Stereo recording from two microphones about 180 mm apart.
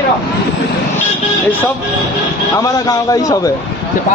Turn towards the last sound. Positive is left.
turn(degrees=20)  # may be behind; listen again after turning